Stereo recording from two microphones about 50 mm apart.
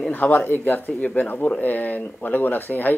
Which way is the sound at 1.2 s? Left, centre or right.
Left.